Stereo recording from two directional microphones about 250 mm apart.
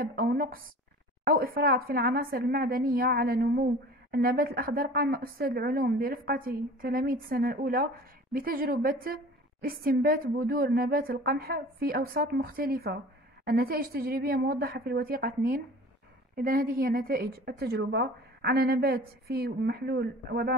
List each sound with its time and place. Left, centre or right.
0.0 s a woman's voice: right